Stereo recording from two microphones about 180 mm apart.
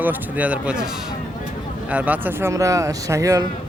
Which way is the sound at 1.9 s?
10° right (ahead or behind).